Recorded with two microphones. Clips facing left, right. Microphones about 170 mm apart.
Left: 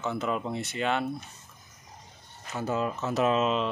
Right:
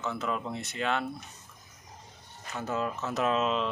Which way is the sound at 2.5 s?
Centre (ahead or behind).